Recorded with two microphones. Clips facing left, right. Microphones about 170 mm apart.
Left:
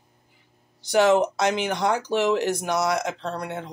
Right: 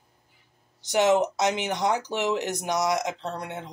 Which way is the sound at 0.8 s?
20° right (ahead or behind).